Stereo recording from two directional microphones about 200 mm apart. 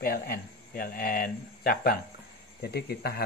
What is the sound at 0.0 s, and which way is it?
Speech, 45° left (ahead or behind).